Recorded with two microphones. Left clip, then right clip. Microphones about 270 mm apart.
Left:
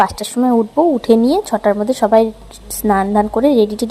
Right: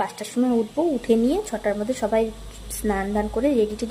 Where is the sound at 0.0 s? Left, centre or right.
Left.